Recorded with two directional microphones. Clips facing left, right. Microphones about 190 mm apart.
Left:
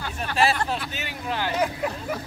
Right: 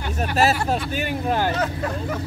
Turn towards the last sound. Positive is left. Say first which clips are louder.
# right 7 dB
turn(degrees=-45)  # may be behind; listen again after turning